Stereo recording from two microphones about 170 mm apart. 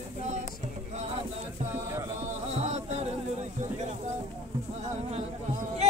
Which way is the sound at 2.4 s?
40° right (ahead or behind).